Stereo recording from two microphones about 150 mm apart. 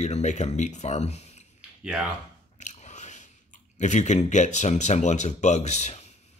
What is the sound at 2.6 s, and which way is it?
Biting, 50° left (ahead or behind).